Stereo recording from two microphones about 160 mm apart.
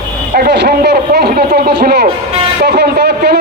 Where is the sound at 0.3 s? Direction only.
90° right.